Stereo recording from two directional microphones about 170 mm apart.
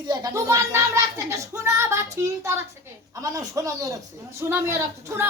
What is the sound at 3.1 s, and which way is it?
A man's voice, 20° right (ahead or behind).